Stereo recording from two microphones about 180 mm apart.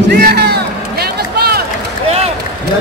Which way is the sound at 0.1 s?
60° right (ahead or behind).